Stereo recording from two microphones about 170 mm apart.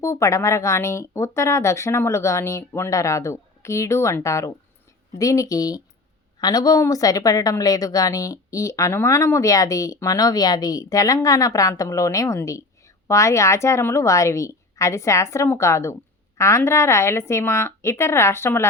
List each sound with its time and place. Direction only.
0.0 s a woman's voice: 15° left (ahead or behind)